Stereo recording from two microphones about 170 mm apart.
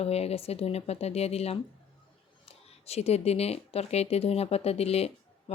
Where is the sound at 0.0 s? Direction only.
35° left (ahead or behind).